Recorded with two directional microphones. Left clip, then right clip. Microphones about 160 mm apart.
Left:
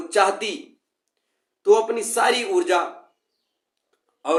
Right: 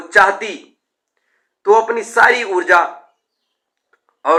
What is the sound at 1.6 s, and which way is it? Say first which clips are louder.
Speech: right 5 dB; 35° left (ahead or behind).